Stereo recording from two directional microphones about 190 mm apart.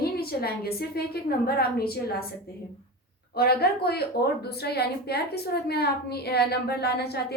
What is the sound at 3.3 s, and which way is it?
A woman's voice, 55° left (ahead or behind).